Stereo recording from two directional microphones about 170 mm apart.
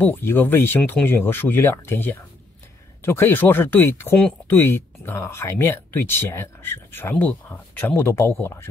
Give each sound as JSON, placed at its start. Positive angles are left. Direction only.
{"t": 0.0, "sound": "speech", "side_deg": 10}